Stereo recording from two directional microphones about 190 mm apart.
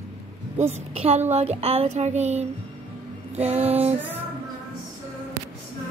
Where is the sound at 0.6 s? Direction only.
35° right (ahead or behind).